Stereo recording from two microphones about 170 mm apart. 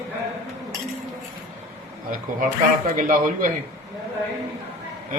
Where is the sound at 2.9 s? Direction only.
50° right (ahead or behind).